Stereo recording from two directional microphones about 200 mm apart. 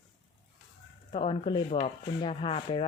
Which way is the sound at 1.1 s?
25° left (ahead or behind).